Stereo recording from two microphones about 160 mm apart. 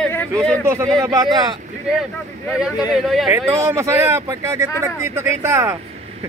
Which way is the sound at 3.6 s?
20° right (ahead or behind).